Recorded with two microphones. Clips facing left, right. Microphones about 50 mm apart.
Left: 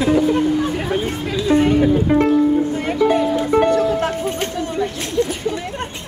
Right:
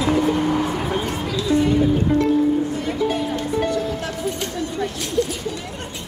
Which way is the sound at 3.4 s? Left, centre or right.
Left.